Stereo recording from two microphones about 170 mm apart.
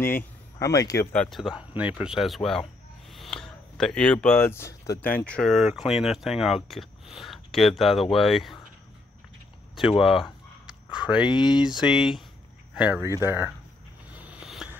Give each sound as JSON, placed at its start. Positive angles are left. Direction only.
{"t": 0.0, "sound": "speech", "side_deg": 15}
{"t": 1.1, "sound": "speech", "side_deg": 5}
{"t": 9.8, "sound": "a sound", "side_deg": 0}
{"t": 11.2, "sound": "speech", "side_deg": 25}
{"t": 11.6, "sound": "speech", "side_deg": -5}
{"t": 14.1, "sound": "a sound", "side_deg": -10}